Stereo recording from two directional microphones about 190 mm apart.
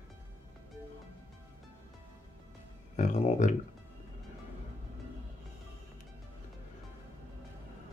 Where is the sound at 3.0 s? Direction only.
40° left (ahead or behind).